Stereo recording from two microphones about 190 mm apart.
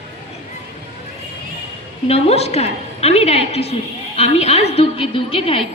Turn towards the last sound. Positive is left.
turn(degrees=30)  # may be behind; listen again after turning